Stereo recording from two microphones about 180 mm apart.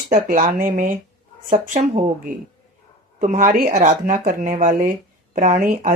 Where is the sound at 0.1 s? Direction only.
50° right (ahead or behind).